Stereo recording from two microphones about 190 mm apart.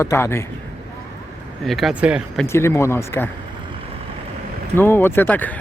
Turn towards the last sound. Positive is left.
turn(degrees=10)  # may be behind; listen again after turning